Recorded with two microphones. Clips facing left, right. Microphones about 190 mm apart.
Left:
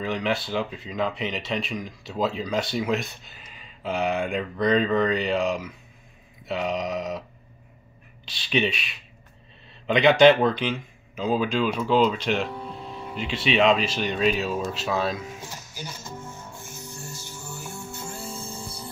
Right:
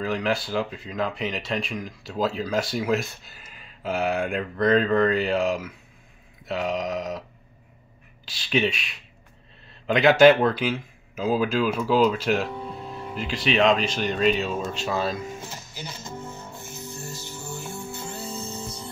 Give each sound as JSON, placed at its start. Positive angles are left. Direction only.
{"t": 0.0, "sound": "speech", "side_deg": 0}
{"t": 8.3, "sound": "speech", "side_deg": 0}
{"t": 15.5, "sound": "music", "side_deg": -20}
{"t": 17.9, "sound": "music", "side_deg": 10}